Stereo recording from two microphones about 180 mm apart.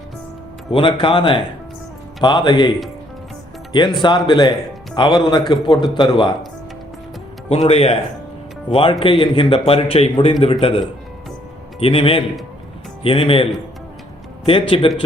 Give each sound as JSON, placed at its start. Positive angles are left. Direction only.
{"t": 0.7, "sound": "a man's voice", "side_deg": 30}
{"t": 7.5, "sound": "a man's voice", "side_deg": 35}
{"t": 14.7, "sound": "a man's voice", "side_deg": 30}